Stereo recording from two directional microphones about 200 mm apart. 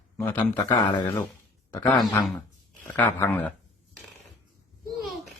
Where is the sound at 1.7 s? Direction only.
5° left (ahead or behind).